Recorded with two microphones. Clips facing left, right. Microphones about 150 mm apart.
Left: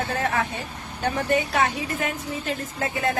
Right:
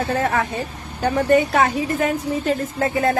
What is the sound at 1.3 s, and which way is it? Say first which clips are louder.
Speech: right 7 dB; 45° right (ahead or behind).